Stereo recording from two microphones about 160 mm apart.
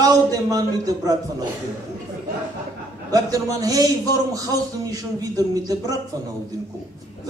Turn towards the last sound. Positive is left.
turn(degrees=-20)  # may be behind; listen again after turning